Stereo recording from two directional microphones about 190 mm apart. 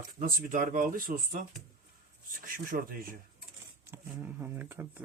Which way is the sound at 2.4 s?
50° right (ahead or behind).